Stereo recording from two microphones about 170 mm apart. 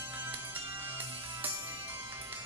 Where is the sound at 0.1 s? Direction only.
10° right (ahead or behind).